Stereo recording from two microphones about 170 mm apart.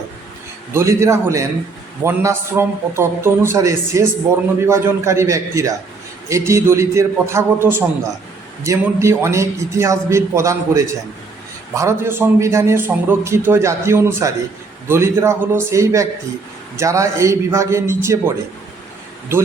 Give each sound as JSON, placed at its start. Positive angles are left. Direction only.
{"t": 0.7, "sound": "a man's voice", "side_deg": -15}